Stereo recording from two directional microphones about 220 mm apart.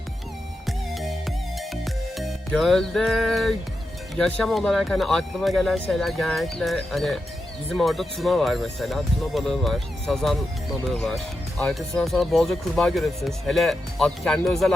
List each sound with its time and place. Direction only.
0.6 s music: centre (ahead or behind)
4.1 s speech: centre (ahead or behind)